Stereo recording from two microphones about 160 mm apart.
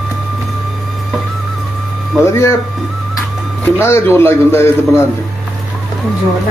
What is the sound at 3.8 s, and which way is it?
A man's voice, 15° left (ahead or behind).